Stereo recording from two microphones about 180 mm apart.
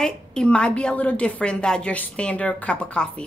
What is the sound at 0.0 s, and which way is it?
A woman's voice, 5° left (ahead or behind).